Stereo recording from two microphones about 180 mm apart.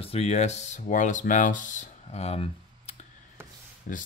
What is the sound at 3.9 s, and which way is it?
Speech, 50° left (ahead or behind).